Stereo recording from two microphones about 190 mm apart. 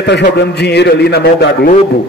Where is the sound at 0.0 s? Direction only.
65° left (ahead or behind).